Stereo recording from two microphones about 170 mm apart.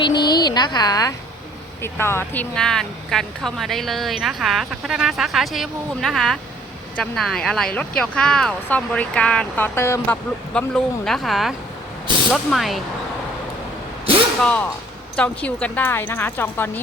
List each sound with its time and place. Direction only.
0.0 s speech: 25° left (ahead or behind); by 12.8 s centre (ahead or behind)
14.4 s a woman's voice: 10° left (ahead or behind)